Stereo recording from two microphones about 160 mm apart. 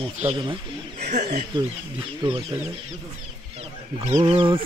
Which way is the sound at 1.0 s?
50° right (ahead or behind).